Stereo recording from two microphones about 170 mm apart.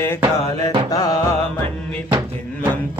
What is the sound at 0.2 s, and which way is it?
Music, 25° right (ahead or behind).